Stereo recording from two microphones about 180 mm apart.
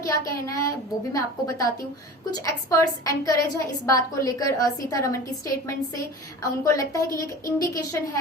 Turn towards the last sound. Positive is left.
turn(degrees=20)  # may be behind; listen again after turning